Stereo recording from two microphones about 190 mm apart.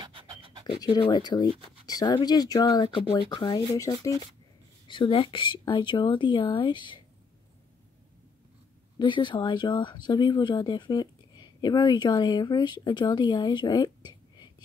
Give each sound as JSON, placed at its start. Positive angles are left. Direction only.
{"t": 0.0, "sound": "pant", "side_deg": -25}
{"t": 0.7, "sound": "speech", "side_deg": 20}
{"t": 8.9, "sound": "speech", "side_deg": 25}